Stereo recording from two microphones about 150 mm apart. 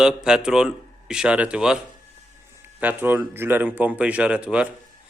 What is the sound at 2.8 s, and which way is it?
A man's voice, 10° right (ahead or behind).